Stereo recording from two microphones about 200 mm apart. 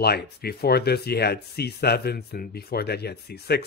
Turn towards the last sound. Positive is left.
turn(degrees=55)  # may be behind; listen again after turning